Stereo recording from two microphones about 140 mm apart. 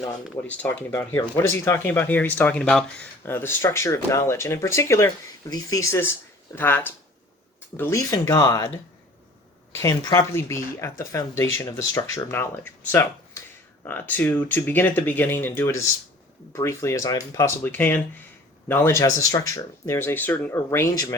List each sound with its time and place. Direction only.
0.4 s speech: 10° left (ahead or behind); by 8.7 s 30° left (ahead or behind)
9.7 s speech: 25° left (ahead or behind)